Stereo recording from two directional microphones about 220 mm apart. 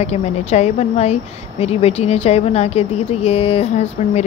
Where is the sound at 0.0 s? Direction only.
30° left (ahead or behind).